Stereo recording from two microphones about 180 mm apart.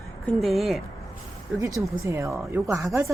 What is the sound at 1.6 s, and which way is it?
Speech, 20° right (ahead or behind).